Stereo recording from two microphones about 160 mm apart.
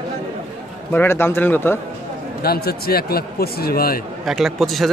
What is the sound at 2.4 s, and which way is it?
A man's voice, 75° left (ahead or behind).